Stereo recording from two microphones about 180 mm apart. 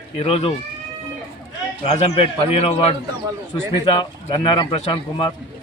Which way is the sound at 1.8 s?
35° left (ahead or behind).